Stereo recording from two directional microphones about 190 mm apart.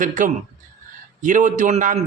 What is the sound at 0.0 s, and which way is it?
A man's voice, 45° right (ahead or behind).